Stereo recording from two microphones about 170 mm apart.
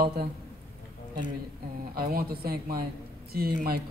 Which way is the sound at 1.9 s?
60° right (ahead or behind).